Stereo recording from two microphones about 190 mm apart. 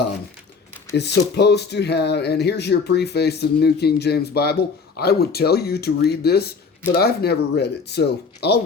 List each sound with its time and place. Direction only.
0.9 s speech: 60° left (ahead or behind)